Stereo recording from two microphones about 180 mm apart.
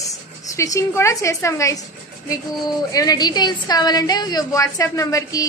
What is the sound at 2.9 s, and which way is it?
A woman's voice, 20° left (ahead or behind).